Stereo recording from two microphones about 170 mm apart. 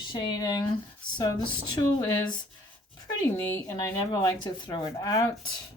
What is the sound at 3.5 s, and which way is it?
Speech, 20° left (ahead or behind).